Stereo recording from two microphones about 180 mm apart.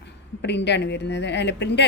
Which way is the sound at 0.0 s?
70° left (ahead or behind).